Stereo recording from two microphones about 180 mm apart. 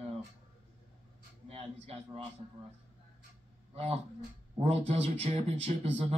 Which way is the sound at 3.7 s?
35° right (ahead or behind).